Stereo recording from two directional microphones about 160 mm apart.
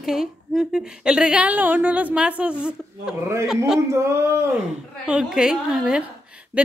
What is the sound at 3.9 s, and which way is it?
Speech, 15° right (ahead or behind).